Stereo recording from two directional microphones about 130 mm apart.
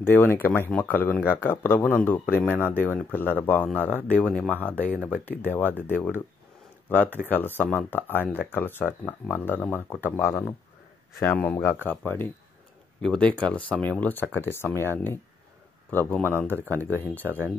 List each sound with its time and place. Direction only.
0.0 s speech: 15° left (ahead or behind)
4.9 s speech: 15° right (ahead or behind)
5.4 s speech: 15° left (ahead or behind)